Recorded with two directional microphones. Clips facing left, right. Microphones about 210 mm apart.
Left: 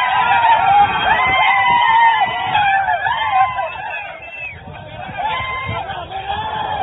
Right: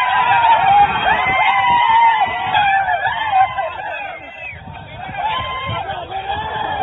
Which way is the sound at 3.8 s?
55° right (ahead or behind).